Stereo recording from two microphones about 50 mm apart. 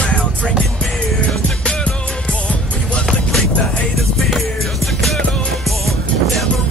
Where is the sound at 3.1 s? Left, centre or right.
Centre.